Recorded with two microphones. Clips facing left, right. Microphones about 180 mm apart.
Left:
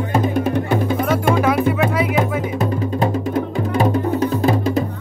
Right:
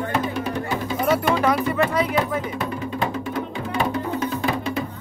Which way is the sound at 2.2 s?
40° left (ahead or behind).